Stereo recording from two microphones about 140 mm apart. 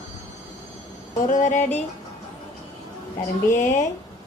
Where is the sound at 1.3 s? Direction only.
60° left (ahead or behind).